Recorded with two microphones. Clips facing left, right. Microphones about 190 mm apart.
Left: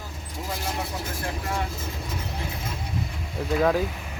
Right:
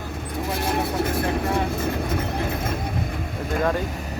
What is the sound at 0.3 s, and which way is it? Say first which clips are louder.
Vehicle: right 6 dB; 60° right (ahead or behind).